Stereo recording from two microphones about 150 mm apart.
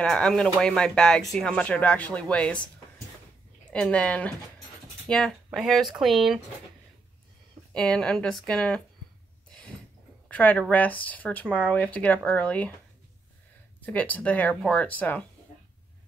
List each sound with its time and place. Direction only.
0.0 s speech: 5° left (ahead or behind)
3.7 s speech: 5° left (ahead or behind)
7.7 s speech: 5° left (ahead or behind)
10.3 s speech: 10° left (ahead or behind)
13.7 s speech: 10° left (ahead or behind)